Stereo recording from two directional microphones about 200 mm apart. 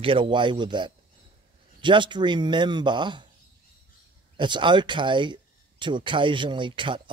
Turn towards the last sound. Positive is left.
turn(degrees=-25)  # may be behind; listen again after turning